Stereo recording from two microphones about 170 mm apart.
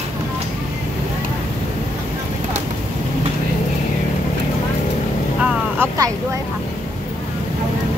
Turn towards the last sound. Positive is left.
turn(degrees=-15)  # may be behind; listen again after turning